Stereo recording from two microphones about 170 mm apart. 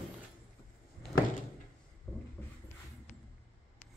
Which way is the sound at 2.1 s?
20° left (ahead or behind).